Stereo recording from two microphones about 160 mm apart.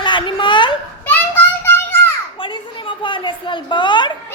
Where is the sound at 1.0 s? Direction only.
10° left (ahead or behind).